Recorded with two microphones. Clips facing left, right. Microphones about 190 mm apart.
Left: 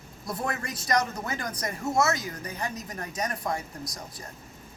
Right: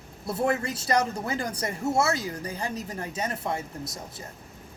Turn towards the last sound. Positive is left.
turn(degrees=-25)  # may be behind; listen again after turning